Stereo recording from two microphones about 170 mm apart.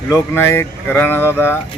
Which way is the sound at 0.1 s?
15° left (ahead or behind).